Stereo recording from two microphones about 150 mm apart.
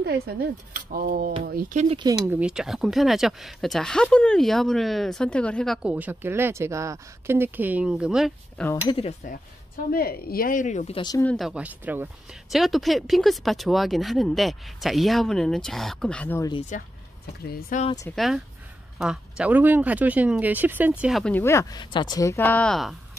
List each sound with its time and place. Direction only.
0.0 s speech: 90° right; by 1.9 s 65° right (ahead or behind)
2.1 s speech: 10° right (ahead or behind); by 5.8 s 5° left (ahead or behind)
5.8 s speech: 10° right (ahead or behind)
8.8 s speech: 35° left (ahead or behind)
9.9 s speech: 90° left; by 11.0 s 55° left (ahead or behind)
11.3 s speech: 5° right (ahead or behind)
12.4 s speech: centre (ahead or behind)
16.5 s speech: 50° left (ahead or behind)
17.4 s speech: 90° left
18.1 s speech: centre (ahead or behind)
21.0 s speech: centre (ahead or behind)
21.3 s speech: 15° left (ahead or behind)